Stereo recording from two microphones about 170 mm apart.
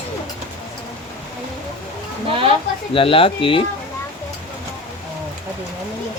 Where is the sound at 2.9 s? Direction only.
30° left (ahead or behind).